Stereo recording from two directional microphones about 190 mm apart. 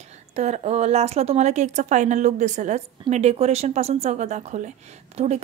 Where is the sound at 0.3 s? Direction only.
35° right (ahead or behind).